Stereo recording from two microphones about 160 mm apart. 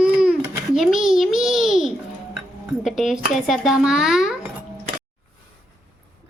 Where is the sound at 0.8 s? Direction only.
Centre (ahead or behind).